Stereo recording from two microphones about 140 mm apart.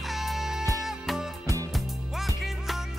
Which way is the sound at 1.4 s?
25° right (ahead or behind).